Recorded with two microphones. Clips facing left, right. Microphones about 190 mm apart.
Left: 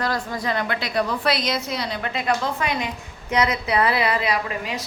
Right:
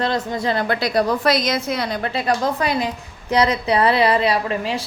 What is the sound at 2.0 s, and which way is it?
A woman's voice, 35° right (ahead or behind).